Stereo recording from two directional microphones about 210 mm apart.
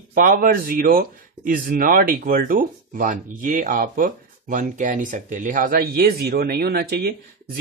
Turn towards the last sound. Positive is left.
turn(degrees=-45)  # may be behind; listen again after turning